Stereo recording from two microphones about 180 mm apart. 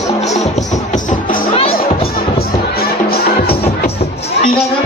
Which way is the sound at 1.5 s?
30° left (ahead or behind).